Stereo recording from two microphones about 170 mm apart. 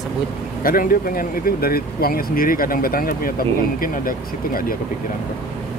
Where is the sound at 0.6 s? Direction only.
55° left (ahead or behind).